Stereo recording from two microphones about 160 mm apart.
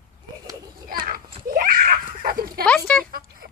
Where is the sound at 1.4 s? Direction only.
60° right (ahead or behind).